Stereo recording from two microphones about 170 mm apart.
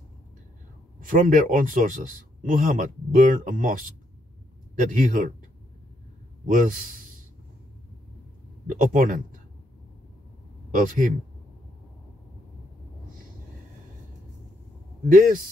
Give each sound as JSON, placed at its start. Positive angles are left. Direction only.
{"t": 1.0, "sound": "a man's voice", "side_deg": -50}
{"t": 6.4, "sound": "a man's voice", "side_deg": -55}
{"t": 8.7, "sound": "a man's voice", "side_deg": -55}
{"t": 10.7, "sound": "speech", "side_deg": -50}
{"t": 15.0, "sound": "a man's voice", "side_deg": -55}